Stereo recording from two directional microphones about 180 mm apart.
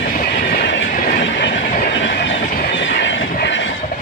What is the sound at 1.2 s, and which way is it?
Train, 80° left.